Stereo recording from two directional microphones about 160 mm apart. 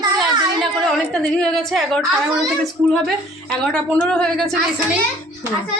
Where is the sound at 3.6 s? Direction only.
5° left (ahead or behind).